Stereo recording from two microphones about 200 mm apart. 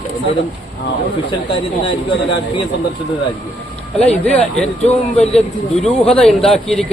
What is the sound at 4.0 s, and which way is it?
A man's voice, 5° left (ahead or behind).